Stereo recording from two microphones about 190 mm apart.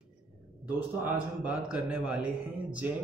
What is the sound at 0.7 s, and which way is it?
A man's voice, 10° right (ahead or behind).